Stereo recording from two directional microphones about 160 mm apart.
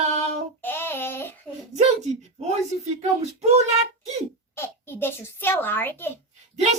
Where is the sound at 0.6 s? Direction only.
15° left (ahead or behind).